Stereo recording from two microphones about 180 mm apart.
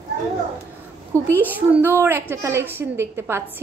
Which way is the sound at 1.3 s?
10° right (ahead or behind).